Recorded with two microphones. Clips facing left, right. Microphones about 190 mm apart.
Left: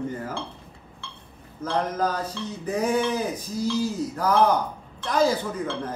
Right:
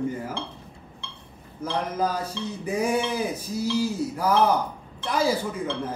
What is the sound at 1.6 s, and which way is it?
Speech, 10° right (ahead or behind).